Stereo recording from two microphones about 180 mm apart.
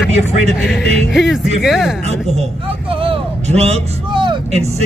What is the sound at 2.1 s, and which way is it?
A man's voice, 35° right (ahead or behind).